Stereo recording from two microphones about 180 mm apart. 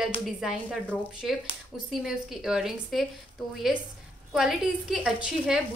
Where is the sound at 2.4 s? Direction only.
Centre (ahead or behind).